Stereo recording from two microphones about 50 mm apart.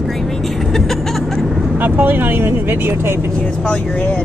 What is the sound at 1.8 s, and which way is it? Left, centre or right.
Speech, right.